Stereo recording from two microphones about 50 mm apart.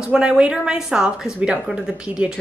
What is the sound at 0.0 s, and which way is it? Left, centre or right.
Speech, centre.